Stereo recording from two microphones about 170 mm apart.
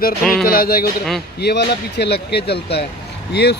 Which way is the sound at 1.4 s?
75° left (ahead or behind).